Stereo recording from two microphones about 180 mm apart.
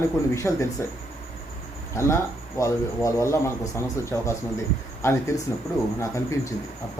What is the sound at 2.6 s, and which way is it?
Speech, 15° left (ahead or behind).